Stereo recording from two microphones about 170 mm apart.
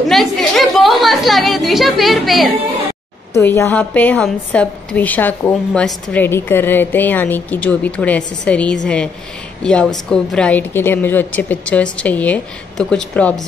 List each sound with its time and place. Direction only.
0.1 s a woman's voice: centre (ahead or behind)
3.3 s a woman's voice: 15° left (ahead or behind)